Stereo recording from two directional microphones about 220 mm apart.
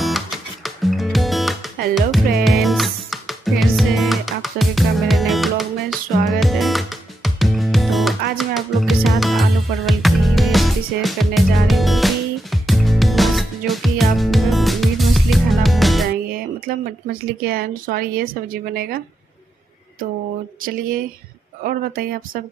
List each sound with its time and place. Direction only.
0.0 s music: centre (ahead or behind)
16.6 s a woman's voice: 45° right (ahead or behind)
20.6 s speech: 40° right (ahead or behind)